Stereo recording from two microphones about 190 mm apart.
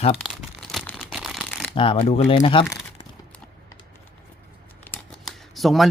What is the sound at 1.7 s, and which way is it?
Speech, 25° left (ahead or behind).